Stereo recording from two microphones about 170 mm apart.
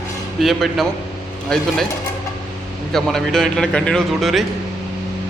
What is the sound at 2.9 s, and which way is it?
A man's voice, 5° left (ahead or behind).